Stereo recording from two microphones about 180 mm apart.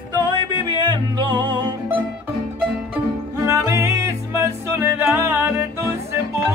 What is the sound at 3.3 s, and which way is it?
Music, 15° right (ahead or behind).